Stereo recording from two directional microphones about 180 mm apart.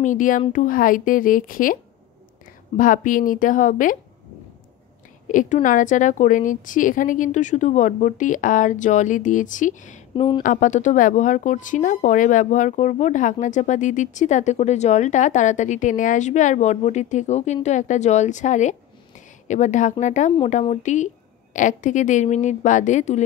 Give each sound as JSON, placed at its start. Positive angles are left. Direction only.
{"t": 0.0, "sound": "speech", "side_deg": 45}
{"t": 2.8, "sound": "speech", "side_deg": 45}
{"t": 5.3, "sound": "speech", "side_deg": 45}
{"t": 10.1, "sound": "speech", "side_deg": 25}
{"t": 10.4, "sound": "a woman's voice", "side_deg": 45}